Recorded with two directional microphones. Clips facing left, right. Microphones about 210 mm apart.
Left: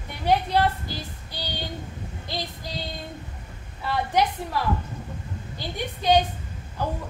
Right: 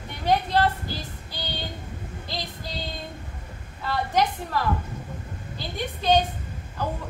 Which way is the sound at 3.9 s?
10° left (ahead or behind).